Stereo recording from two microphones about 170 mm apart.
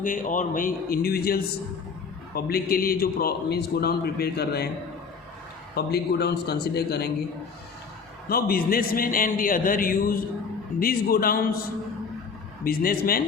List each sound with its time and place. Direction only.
0.0 s a man's voice: 50° left (ahead or behind); by 4.7 s 70° left (ahead or behind)
5.7 s a man's voice: 70° left (ahead or behind)
8.3 s a man's voice: 60° left (ahead or behind)
12.6 s a man's voice: 60° left (ahead or behind)